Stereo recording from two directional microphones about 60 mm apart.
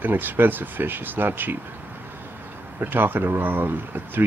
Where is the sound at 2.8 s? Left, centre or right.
Right.